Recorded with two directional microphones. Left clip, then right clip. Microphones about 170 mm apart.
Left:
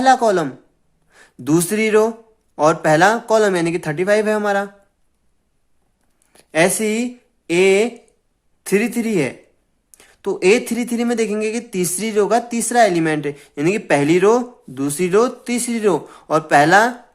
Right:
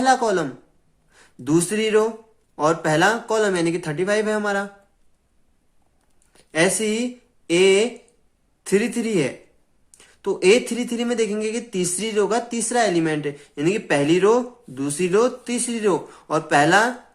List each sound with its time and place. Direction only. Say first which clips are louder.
0.0 s speech: left 5 dB; 35° left (ahead or behind)
6.3 s speech: left 4 dB; 35° left (ahead or behind)